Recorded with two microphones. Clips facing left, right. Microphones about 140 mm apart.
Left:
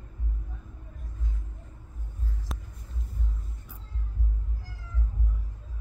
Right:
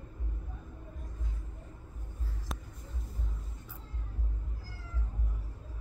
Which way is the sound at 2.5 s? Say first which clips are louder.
Right 1 dB; centre (ahead or behind).